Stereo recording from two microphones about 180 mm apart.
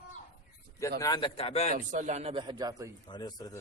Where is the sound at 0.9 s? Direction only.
20° left (ahead or behind).